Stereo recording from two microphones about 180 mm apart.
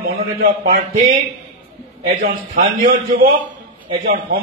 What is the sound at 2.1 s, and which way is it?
A man's voice, 45° right (ahead or behind).